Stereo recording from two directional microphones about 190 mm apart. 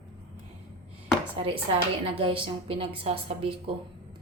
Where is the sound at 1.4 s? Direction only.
30° right (ahead or behind).